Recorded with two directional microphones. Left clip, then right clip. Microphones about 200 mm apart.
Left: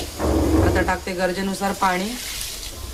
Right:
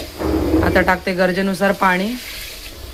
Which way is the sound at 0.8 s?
30° right (ahead or behind).